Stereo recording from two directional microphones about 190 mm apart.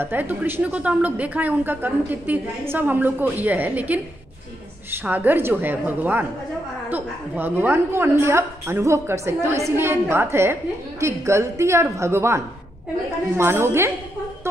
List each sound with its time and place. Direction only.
0.0 s a woman's voice: 10° right (ahead or behind)